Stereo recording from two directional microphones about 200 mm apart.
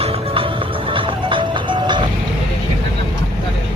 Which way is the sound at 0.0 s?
30° right (ahead or behind).